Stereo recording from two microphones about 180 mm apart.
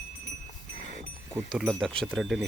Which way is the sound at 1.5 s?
Centre (ahead or behind).